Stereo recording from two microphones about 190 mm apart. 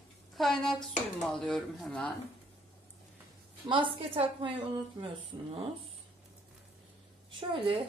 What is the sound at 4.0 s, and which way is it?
A woman's voice, 30° right (ahead or behind).